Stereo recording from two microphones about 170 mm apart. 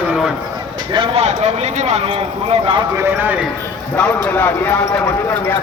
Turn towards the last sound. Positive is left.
turn(degrees=10)  # may be behind; listen again after turning